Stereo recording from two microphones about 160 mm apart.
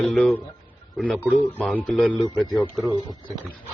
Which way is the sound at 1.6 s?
5° left (ahead or behind).